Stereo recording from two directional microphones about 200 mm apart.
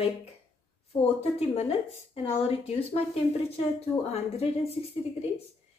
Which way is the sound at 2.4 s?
30° left (ahead or behind).